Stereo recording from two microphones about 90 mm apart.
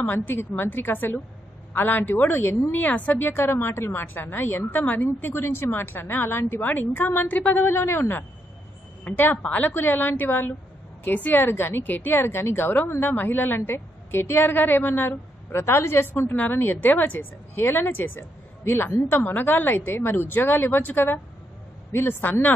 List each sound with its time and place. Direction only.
0.0 s speech: 20° left (ahead or behind)